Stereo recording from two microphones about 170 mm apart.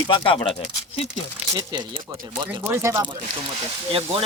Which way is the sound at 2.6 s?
15° right (ahead or behind).